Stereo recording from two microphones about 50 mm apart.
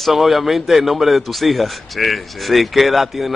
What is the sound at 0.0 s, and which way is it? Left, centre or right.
A man's voice, centre.